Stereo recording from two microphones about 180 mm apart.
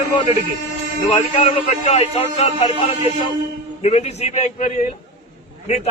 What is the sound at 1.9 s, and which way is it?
Speech, 35° left (ahead or behind).